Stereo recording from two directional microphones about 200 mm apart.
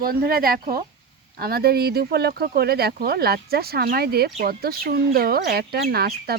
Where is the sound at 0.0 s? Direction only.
45° right (ahead or behind).